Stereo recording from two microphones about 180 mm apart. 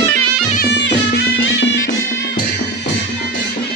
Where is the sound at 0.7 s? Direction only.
70° left (ahead or behind); by 1.8 s 90° left.